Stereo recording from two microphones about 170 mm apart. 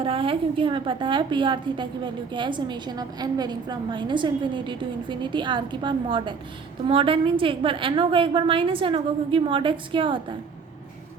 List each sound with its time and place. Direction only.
0.0 s a woman's voice: 30° right (ahead or behind)